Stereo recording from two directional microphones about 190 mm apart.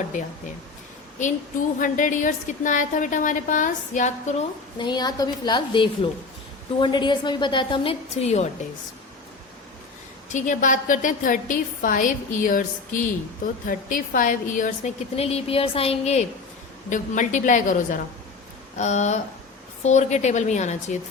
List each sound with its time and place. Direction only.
1.2 s a woman's voice: 45° left (ahead or behind)
4.8 s a woman's voice: 20° left (ahead or behind)
10.2 s a woman's voice: 40° left (ahead or behind)